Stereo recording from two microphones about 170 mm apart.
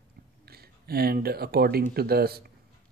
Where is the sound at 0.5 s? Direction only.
65° right (ahead or behind).